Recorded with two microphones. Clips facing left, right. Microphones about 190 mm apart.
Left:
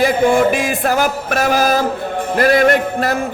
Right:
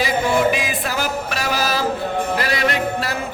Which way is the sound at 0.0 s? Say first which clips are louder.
Left 5 dB; 50° left (ahead or behind).